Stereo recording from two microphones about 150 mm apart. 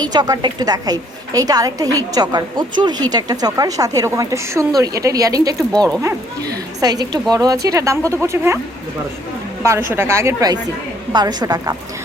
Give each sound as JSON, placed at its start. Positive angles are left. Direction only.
{"t": 0.0, "sound": "a woman's voice", "side_deg": -30}
{"t": 6.7, "sound": "a woman's voice", "side_deg": -25}
{"t": 9.6, "sound": "a woman's voice", "side_deg": -15}